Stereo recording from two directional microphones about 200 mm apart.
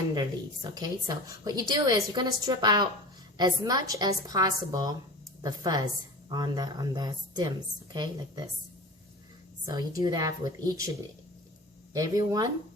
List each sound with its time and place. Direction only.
0.1 s a woman's voice: 20° right (ahead or behind)
9.6 s a woman's voice: 20° right (ahead or behind)
11.9 s a woman's voice: 15° right (ahead or behind)